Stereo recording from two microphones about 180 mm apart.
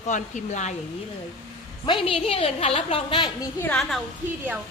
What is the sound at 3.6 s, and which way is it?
Speech, 5° left (ahead or behind).